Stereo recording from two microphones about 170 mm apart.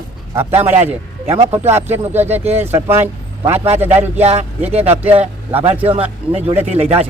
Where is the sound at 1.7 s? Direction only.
40° right (ahead or behind).